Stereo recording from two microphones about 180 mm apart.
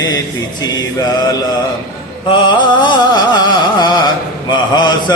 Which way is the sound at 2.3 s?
25° left (ahead or behind).